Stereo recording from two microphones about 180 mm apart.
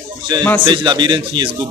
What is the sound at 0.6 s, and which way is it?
Speech, 25° right (ahead or behind).